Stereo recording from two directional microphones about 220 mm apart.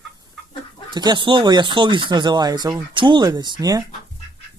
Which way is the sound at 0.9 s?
20° right (ahead or behind).